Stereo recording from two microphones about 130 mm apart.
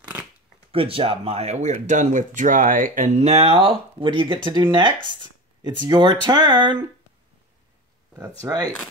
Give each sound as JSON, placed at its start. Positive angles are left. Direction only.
{"t": 0.7, "sound": "speech", "side_deg": -45}
{"t": 8.4, "sound": "speech", "side_deg": -30}